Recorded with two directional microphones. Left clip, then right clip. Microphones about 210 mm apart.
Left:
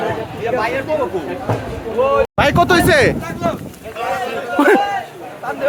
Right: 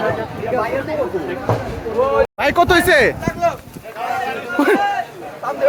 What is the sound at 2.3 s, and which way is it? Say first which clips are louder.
Speech: left 1 dB; 5° left (ahead or behind).